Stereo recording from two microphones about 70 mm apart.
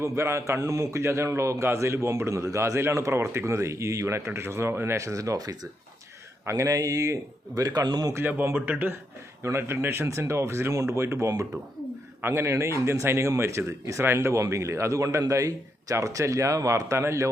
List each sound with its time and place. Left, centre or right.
0.0 s a man's voice: right
6.4 s speech: right
6.7 s speech: right
8.1 s speech: right
9.4 s speech: right
10.1 s a man's voice: right